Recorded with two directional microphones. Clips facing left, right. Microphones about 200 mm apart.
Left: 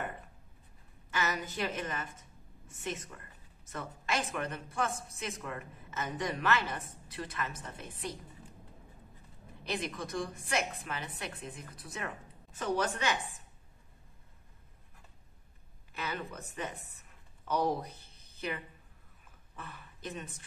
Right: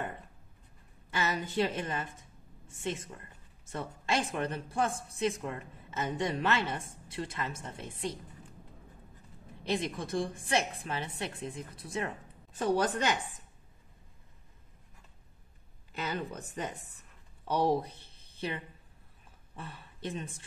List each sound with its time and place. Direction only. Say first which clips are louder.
1.1 s a woman's voice: right 4 dB; 30° right (ahead or behind)
9.7 s a woman's voice: right 4 dB; 30° right (ahead or behind)
15.9 s speech: right 3 dB; 35° right (ahead or behind)